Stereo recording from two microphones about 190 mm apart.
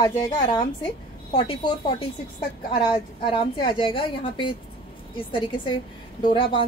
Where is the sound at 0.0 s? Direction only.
25° left (ahead or behind).